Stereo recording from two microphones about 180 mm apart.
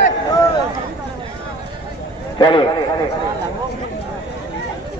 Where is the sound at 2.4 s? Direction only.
30° left (ahead or behind).